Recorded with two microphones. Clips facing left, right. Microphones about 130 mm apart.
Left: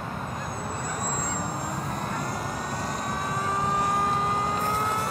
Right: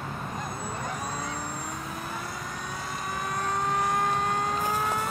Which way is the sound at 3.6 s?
Centre (ahead or behind).